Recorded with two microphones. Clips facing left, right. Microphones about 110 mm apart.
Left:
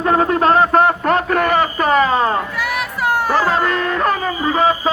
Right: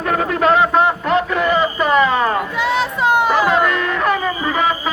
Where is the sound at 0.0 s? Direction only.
30° left (ahead or behind).